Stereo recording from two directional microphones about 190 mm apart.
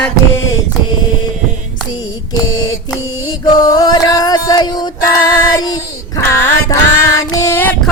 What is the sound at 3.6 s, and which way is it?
Music, 20° left (ahead or behind).